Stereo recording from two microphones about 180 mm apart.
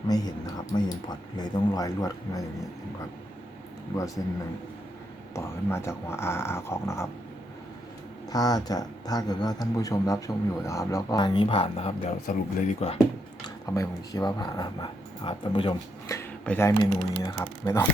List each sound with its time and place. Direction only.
0.1 s speech: 20° left (ahead or behind)
4.2 s speech: 20° left (ahead or behind)
8.3 s speech: 20° left (ahead or behind)
13.4 s speech: 20° left (ahead or behind)